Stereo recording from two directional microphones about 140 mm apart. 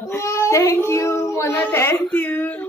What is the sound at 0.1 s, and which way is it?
Speech, 20° left (ahead or behind).